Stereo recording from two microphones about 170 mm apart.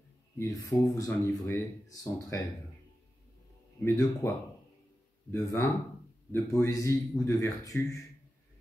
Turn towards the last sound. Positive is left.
turn(degrees=20)  # may be behind; listen again after turning